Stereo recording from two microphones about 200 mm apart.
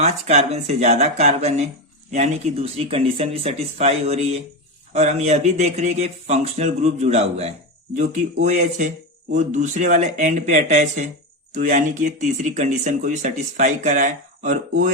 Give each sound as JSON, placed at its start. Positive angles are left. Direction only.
{"t": 0.0, "sound": "speech", "side_deg": -35}